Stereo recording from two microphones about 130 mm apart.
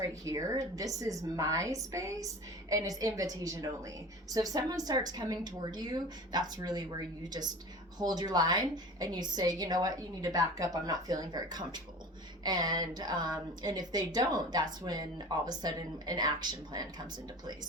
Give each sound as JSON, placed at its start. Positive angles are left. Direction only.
{"t": 0.0, "sound": "a woman's voice", "side_deg": -25}